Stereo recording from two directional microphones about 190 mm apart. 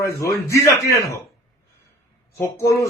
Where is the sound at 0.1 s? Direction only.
15° left (ahead or behind).